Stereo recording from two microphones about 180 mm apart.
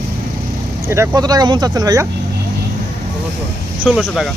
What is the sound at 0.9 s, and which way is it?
Speech, 20° right (ahead or behind).